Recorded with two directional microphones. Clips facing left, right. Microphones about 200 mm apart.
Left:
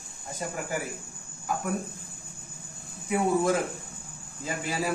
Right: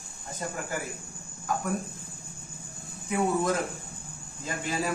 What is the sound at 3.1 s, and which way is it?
A man's voice, 10° left (ahead or behind).